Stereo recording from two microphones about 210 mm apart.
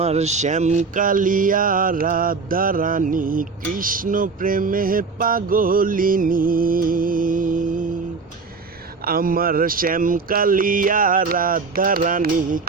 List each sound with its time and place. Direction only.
0.0 s mantra: 30° right (ahead or behind)
9.0 s mantra: 45° right (ahead or behind)